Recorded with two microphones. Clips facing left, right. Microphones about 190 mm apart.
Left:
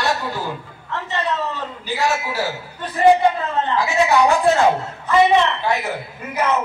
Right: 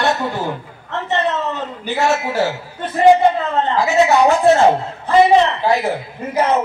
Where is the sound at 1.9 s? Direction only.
55° right (ahead or behind).